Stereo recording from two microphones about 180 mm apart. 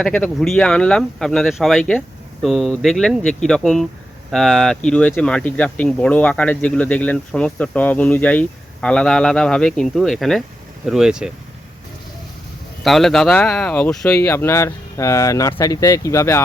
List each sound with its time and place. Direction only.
0.0 s speech: 5° left (ahead or behind)
12.8 s speech: centre (ahead or behind)